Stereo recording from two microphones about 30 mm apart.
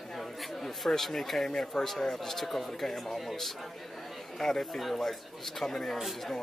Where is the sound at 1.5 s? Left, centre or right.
Left.